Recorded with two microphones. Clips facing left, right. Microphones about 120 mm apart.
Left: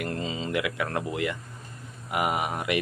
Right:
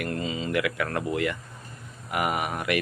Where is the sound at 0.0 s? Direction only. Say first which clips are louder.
Right 1 dB; 25° left (ahead or behind).